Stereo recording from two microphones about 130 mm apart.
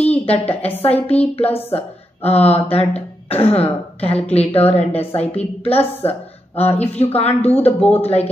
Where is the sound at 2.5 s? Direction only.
50° left (ahead or behind).